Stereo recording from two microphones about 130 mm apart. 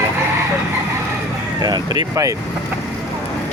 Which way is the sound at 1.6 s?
35° right (ahead or behind).